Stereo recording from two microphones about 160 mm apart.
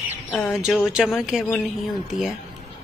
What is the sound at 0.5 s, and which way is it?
Speech, 5° right (ahead or behind).